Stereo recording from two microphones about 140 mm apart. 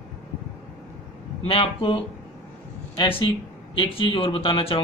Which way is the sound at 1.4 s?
40° left (ahead or behind).